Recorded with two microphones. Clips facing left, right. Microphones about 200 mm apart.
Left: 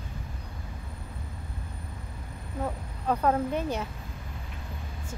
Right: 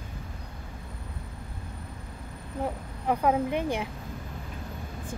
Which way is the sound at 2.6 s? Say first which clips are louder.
Right 1 dB; 10° right (ahead or behind).